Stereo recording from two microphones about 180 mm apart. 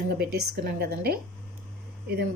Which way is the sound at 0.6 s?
60° right (ahead or behind).